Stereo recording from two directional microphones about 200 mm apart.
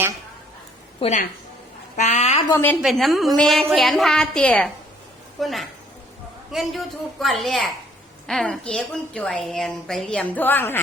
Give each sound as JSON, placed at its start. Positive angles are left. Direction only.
{"t": 0.9, "sound": "a woman's voice", "side_deg": 30}
{"t": 2.5, "sound": "a woman's voice", "side_deg": 10}
{"t": 2.8, "sound": "a woman's voice", "side_deg": 0}